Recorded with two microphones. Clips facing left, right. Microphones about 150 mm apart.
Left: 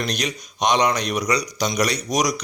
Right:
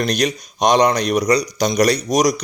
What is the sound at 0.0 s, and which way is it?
Speech, 40° right (ahead or behind).